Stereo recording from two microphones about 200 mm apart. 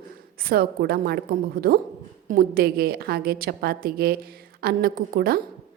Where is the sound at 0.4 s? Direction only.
50° right (ahead or behind).